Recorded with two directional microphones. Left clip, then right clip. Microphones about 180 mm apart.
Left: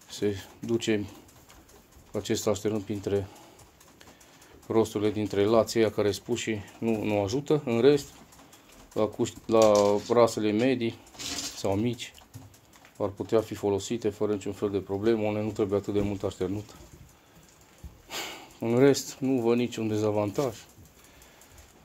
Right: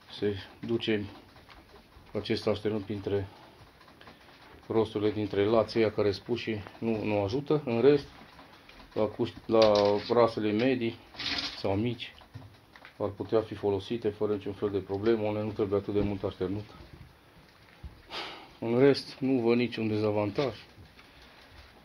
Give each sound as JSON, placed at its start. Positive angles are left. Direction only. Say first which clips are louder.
{"t": 0.1, "sound": "speech", "louder": "left 2 dB", "side_deg": 30}
{"t": 2.1, "sound": "speech", "louder": "left 2 dB", "side_deg": 20}
{"t": 4.6, "sound": "speech", "louder": "left 2 dB", "side_deg": 35}
{"t": 18.1, "sound": "sniff", "louder": "left 2 dB", "side_deg": 35}
{"t": 19.0, "sound": "speech", "louder": "left 1 dB", "side_deg": 15}